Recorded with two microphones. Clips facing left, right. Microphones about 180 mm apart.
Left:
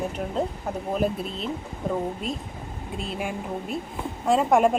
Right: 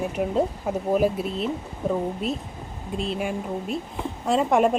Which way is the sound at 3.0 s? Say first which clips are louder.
Right 4 dB; centre (ahead or behind).